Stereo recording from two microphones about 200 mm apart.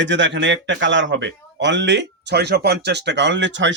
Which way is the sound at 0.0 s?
65° right (ahead or behind).